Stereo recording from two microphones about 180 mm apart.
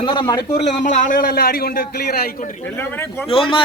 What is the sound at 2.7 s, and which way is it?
Speech, 10° left (ahead or behind).